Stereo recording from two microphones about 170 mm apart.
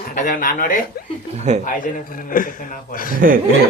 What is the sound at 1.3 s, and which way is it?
Speech, 40° right (ahead or behind).